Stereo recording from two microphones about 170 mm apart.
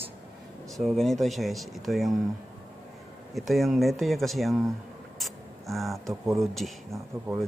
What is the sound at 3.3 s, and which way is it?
Speech, centre (ahead or behind).